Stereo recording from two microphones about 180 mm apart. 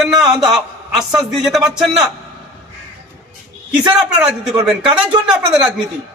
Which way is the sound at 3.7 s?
5° right (ahead or behind).